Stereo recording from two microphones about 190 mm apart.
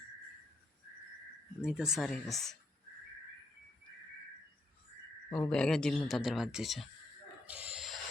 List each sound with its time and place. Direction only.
1.6 s speech: 5° right (ahead or behind)
5.3 s speech: 5° left (ahead or behind)
7.4 s a sound: 5° right (ahead or behind)